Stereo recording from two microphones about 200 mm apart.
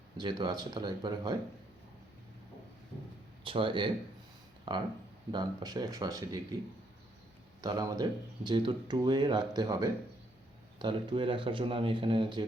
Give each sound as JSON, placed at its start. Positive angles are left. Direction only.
{"t": 0.2, "sound": "speech", "side_deg": -25}
{"t": 3.4, "sound": "speech", "side_deg": -25}
{"t": 7.6, "sound": "speech", "side_deg": -20}